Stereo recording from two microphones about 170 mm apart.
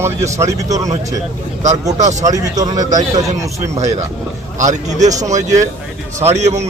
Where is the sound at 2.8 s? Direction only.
45° right (ahead or behind).